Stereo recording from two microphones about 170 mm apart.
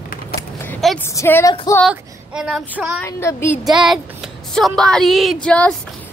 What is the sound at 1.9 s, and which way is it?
Speech, 5° right (ahead or behind).